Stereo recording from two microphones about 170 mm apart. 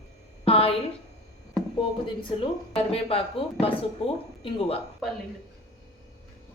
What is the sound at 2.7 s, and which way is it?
A woman's voice, 35° left (ahead or behind).